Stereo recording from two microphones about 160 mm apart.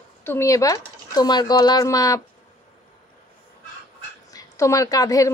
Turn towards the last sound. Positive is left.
turn(degrees=20)  # may be behind; listen again after turning